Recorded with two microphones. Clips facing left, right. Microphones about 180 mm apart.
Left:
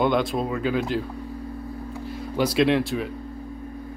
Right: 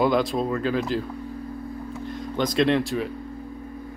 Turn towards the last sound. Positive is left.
turn(degrees=0)  # may be behind; listen again after turning